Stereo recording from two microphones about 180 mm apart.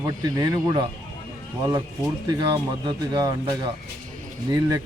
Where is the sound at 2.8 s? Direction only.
20° right (ahead or behind).